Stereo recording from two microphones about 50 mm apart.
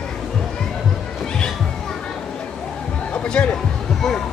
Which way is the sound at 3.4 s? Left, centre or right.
Centre.